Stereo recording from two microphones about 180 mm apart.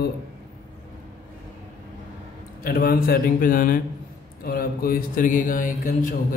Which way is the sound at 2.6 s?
55° left (ahead or behind).